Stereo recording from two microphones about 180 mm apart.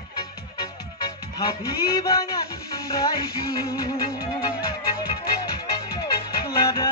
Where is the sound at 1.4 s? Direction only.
20° left (ahead or behind).